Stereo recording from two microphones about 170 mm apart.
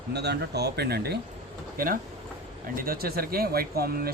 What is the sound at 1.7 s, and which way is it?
Speech, 55° right (ahead or behind).